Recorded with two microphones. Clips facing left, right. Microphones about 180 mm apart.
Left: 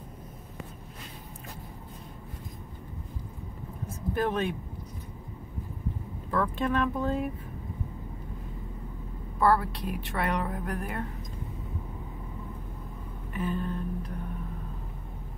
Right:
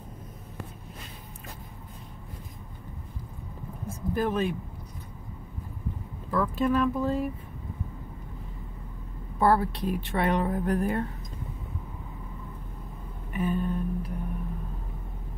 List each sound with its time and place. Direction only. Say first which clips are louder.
3.9 s speech: right 1 dB; centre (ahead or behind)
6.3 s speech: right 3 dB; 5° right (ahead or behind)
9.4 s a woman's voice: right 2 dB; 25° right (ahead or behind)
13.4 s a sound: right 3 dB; 10° right (ahead or behind)